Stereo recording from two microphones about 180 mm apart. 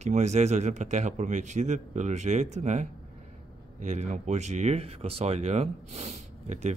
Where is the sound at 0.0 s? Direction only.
40° right (ahead or behind).